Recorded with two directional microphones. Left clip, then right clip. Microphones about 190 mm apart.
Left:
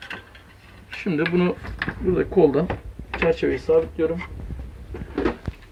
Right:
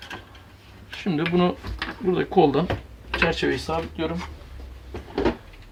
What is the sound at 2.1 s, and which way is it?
Speech, 20° right (ahead or behind).